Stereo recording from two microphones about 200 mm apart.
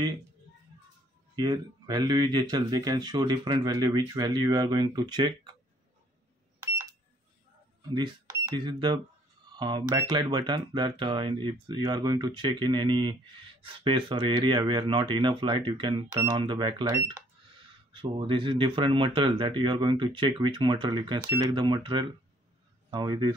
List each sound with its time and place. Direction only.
1.3 s speech: 20° right (ahead or behind)
6.6 s a sound: 15° right (ahead or behind)
7.9 s speech: 25° right (ahead or behind)
17.9 s speech: 25° right (ahead or behind)